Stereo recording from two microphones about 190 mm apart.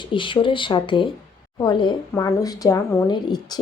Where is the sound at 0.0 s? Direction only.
25° left (ahead or behind).